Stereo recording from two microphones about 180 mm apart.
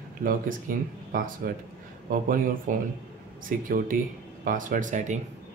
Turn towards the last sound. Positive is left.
turn(degrees=-45)  # may be behind; listen again after turning